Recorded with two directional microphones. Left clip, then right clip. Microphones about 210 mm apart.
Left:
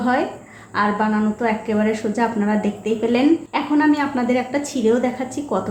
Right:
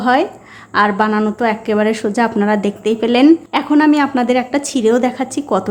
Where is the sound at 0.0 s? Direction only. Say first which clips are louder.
Right 6 dB; 45° right (ahead or behind).